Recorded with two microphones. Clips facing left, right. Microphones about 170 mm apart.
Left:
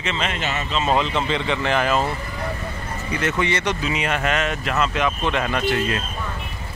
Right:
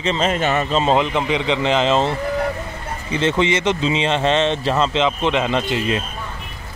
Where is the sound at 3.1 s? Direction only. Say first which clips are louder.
Right 5 dB; 20° right (ahead or behind).